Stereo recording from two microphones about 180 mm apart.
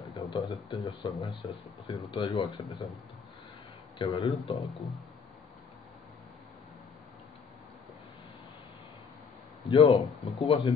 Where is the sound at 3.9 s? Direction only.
25° left (ahead or behind).